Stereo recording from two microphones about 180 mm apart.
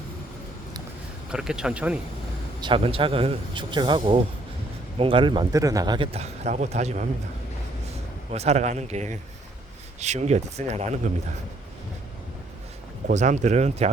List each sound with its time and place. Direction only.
1.3 s speech: 5° right (ahead or behind)
2.6 s a man's voice: 30° right (ahead or behind)
8.3 s speech: 35° right (ahead or behind)
13.1 s speech: 40° right (ahead or behind)